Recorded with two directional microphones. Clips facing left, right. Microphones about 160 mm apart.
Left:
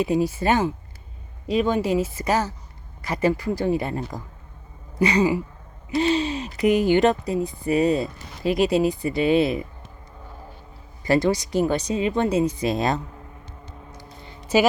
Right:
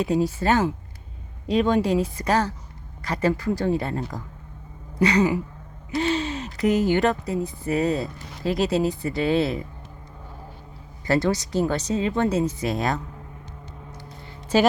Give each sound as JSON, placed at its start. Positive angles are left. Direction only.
{"t": 0.0, "sound": "speech", "side_deg": 10}
{"t": 11.0, "sound": "speech", "side_deg": 15}
{"t": 13.9, "sound": "a sound", "side_deg": 15}